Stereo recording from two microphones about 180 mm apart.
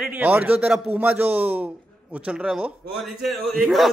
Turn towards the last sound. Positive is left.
turn(degrees=0)  # may be behind; listen again after turning